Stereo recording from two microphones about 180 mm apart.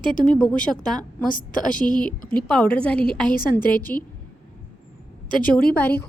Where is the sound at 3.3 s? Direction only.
55° left (ahead or behind).